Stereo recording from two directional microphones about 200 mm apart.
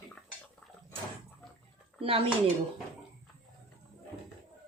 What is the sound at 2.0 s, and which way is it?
Speech, 25° right (ahead or behind).